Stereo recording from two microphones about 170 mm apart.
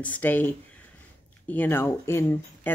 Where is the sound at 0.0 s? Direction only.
10° left (ahead or behind).